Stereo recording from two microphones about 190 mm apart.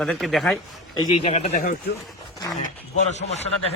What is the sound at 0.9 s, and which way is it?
Speech, 25° left (ahead or behind).